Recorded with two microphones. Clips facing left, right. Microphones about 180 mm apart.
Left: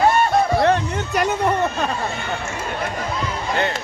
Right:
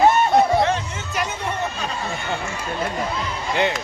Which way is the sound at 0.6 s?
60° left (ahead or behind).